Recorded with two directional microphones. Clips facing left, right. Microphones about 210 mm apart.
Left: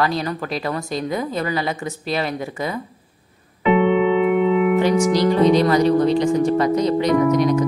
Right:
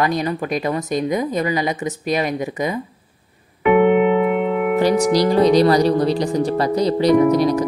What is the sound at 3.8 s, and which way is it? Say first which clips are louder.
Speech: right 3 dB; 55° right (ahead or behind).